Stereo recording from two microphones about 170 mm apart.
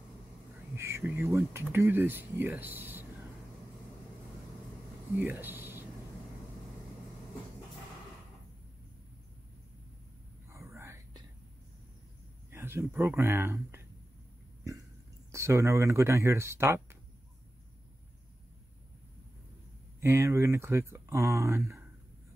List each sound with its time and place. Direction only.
0.7 s speech: 15° right (ahead or behind)
5.1 s speech: 10° right (ahead or behind)
10.5 s whispering: 15° right (ahead or behind)
12.4 s speech: 15° right (ahead or behind)
15.3 s speech: 15° right (ahead or behind)
20.0 s speech: 15° right (ahead or behind)